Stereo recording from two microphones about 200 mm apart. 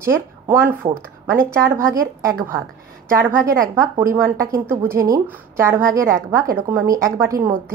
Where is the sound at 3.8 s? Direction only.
15° right (ahead or behind).